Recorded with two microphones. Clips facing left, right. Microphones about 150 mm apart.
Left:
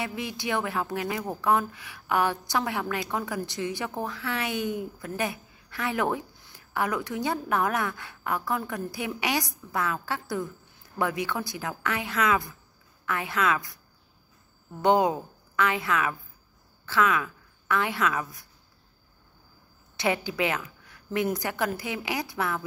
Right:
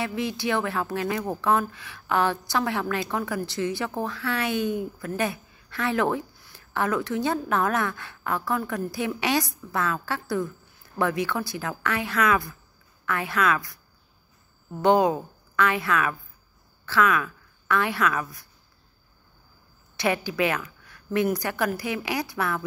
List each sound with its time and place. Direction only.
0.0 s a woman's voice: 20° left (ahead or behind)
14.8 s a woman's voice: 20° left (ahead or behind)
20.0 s a woman's voice: 20° left (ahead or behind)